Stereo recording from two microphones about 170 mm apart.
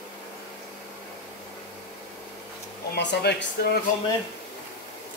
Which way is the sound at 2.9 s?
80° left.